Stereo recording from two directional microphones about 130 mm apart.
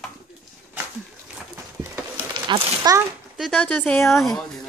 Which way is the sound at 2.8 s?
25° right (ahead or behind).